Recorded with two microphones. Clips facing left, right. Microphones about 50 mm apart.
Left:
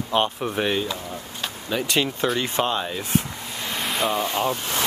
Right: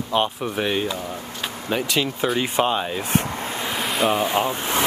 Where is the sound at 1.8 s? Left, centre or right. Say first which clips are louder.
Left 2 dB; centre.